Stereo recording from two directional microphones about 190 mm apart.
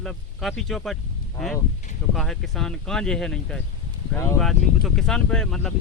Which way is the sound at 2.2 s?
Centre (ahead or behind).